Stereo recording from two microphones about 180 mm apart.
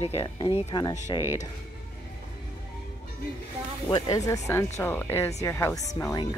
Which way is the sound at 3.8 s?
20° left (ahead or behind).